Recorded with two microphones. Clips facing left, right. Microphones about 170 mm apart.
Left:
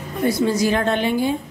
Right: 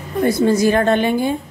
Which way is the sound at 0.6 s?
50° right (ahead or behind).